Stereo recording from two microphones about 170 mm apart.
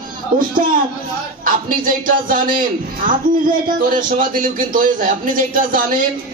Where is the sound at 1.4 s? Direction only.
55° right (ahead or behind).